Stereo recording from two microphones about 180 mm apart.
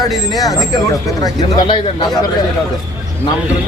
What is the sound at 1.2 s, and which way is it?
Speech, 25° left (ahead or behind).